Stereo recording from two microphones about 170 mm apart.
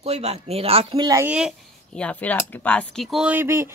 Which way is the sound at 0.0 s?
40° right (ahead or behind).